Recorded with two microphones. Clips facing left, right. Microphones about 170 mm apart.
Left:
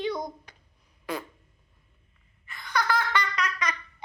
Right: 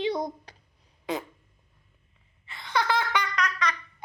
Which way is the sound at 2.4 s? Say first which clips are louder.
Right 1 dB; 25° right (ahead or behind).